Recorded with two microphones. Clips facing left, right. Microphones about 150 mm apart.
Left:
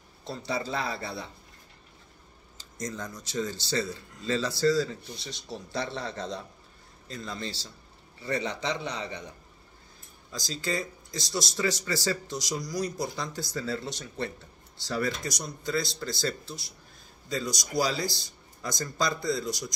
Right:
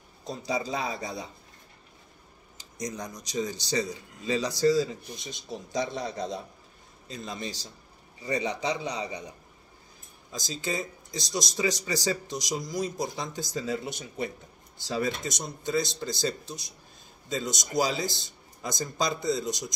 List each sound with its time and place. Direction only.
0.2 s speech: 15° right (ahead or behind)
2.5 s speech: 15° right (ahead or behind)
10.3 s speech: 20° right (ahead or behind)